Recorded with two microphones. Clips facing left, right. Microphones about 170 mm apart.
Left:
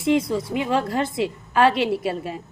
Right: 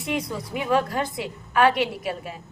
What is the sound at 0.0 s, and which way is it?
A woman's voice, 25° left (ahead or behind).